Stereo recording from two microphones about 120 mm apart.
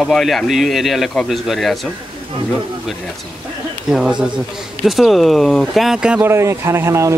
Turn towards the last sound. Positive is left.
turn(degrees=-25)  # may be behind; listen again after turning